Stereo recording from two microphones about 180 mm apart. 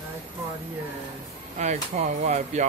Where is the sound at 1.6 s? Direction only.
40° right (ahead or behind).